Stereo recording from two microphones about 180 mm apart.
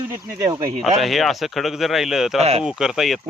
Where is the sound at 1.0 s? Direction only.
Centre (ahead or behind).